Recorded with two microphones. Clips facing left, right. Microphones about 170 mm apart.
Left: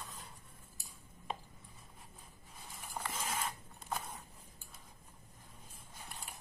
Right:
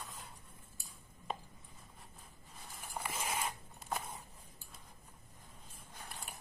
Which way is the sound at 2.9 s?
10° right (ahead or behind).